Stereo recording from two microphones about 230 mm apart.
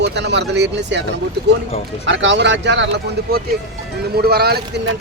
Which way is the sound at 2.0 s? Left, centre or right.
Right.